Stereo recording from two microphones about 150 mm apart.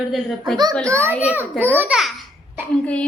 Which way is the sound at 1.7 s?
10° right (ahead or behind).